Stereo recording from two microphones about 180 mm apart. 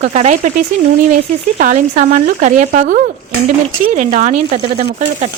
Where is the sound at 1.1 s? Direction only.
45° right (ahead or behind).